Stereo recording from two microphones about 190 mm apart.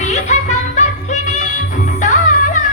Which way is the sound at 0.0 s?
35° left (ahead or behind).